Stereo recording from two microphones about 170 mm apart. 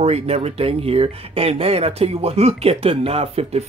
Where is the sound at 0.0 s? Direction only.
40° right (ahead or behind).